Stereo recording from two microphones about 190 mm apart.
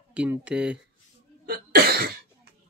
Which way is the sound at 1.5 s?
55° right (ahead or behind).